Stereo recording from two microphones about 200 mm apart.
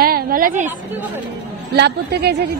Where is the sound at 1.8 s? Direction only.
55° right (ahead or behind).